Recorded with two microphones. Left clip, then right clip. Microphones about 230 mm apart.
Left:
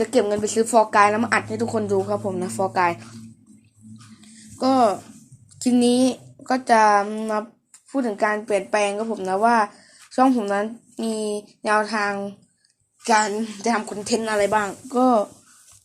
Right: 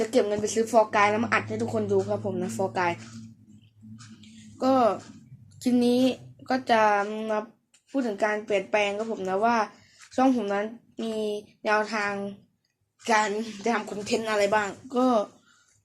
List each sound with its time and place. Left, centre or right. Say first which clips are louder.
0.0 s a woman's voice: left 4 dB; left
4.5 s a woman's voice: left 4 dB; left